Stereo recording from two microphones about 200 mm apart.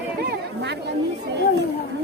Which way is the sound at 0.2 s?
55° right (ahead or behind).